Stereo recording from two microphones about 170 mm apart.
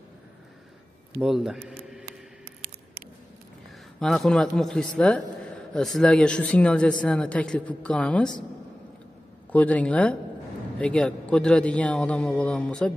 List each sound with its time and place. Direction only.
1.2 s a man's voice: centre (ahead or behind)
4.0 s speech: 5° left (ahead or behind)
9.5 s speech: 10° left (ahead or behind)